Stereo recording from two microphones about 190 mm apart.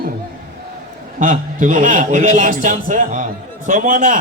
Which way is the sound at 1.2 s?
40° right (ahead or behind).